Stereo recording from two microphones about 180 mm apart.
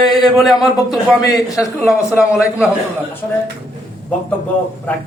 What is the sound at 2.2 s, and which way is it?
Speech, centre (ahead or behind).